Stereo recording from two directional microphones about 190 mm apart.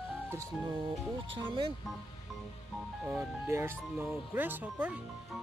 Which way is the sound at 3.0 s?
10° right (ahead or behind).